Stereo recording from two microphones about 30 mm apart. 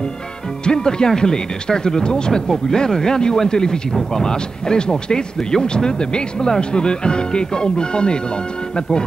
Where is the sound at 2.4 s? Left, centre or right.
Centre.